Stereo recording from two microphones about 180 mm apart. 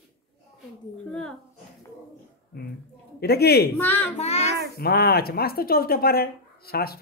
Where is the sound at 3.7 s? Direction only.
10° left (ahead or behind).